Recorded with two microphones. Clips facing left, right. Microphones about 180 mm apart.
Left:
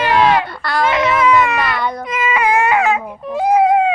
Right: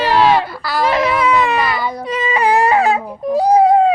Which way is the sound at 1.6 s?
Centre (ahead or behind).